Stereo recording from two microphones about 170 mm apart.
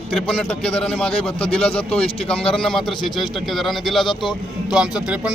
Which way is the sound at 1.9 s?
35° left (ahead or behind).